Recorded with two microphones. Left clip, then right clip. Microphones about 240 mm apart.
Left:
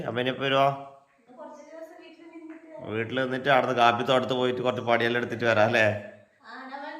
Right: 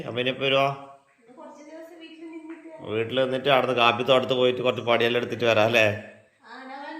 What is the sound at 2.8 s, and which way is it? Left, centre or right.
A man's voice, centre.